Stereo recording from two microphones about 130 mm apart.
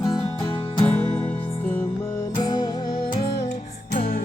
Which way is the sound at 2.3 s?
35° left (ahead or behind).